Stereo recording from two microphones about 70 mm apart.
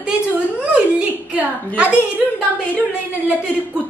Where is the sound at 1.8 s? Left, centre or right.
Right.